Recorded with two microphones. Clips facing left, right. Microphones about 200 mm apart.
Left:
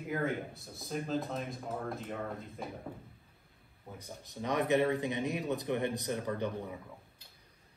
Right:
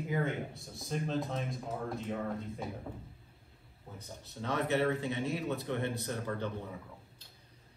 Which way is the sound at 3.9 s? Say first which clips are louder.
Left 2 dB; 15° left (ahead or behind).